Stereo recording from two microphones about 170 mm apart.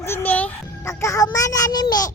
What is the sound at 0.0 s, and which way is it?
A child's voice, 10° left (ahead or behind).